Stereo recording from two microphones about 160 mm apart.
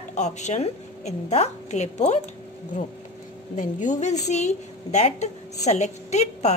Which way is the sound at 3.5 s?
50° left (ahead or behind).